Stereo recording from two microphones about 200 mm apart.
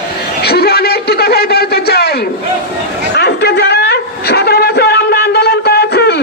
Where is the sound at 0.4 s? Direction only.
50° left (ahead or behind).